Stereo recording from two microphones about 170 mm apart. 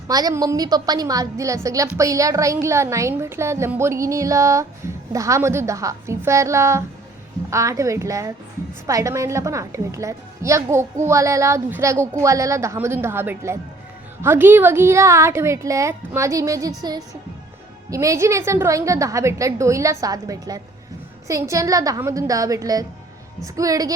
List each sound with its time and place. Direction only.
0.1 s a woman's voice: 20° right (ahead or behind)